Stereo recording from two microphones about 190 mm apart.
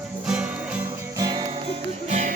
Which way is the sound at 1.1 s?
20° right (ahead or behind).